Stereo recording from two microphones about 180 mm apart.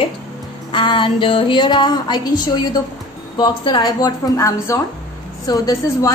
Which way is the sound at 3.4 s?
25° left (ahead or behind).